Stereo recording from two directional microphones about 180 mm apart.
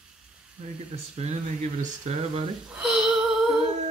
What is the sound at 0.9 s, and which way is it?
Speech, 35° right (ahead or behind).